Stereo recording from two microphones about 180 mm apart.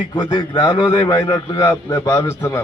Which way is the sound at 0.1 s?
25° left (ahead or behind).